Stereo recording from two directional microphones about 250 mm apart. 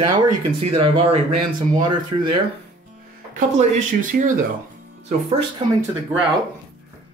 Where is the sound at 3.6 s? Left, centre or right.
Right.